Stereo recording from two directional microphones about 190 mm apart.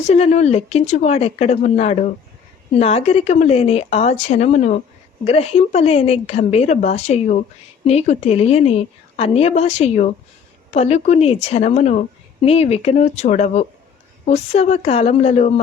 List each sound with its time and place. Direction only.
0.0 s a woman's voice: 35° left (ahead or behind)